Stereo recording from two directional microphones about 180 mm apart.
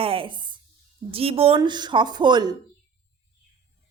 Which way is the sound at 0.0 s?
30° right (ahead or behind).